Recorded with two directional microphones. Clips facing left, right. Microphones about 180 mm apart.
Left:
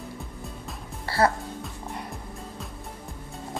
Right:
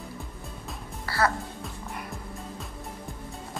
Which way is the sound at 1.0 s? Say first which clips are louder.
Left 4 dB; 25° left (ahead or behind).